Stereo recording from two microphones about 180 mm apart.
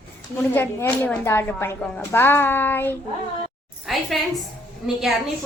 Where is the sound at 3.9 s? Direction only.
Centre (ahead or behind).